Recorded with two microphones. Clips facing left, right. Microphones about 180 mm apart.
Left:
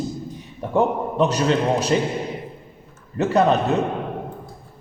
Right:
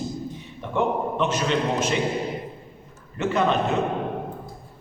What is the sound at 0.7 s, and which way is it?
A man's voice, 40° left (ahead or behind).